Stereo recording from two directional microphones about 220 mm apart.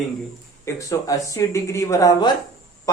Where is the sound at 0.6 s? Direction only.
15° left (ahead or behind).